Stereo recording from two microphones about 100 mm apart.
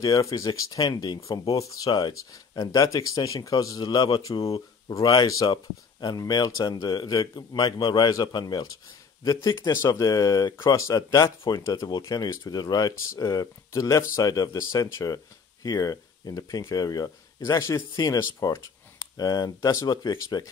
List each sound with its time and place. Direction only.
0.0 s speech: 35° left (ahead or behind)
1.9 s speech: 50° left (ahead or behind); by 9.7 s 30° left (ahead or behind)
9.7 s speech: 45° left (ahead or behind)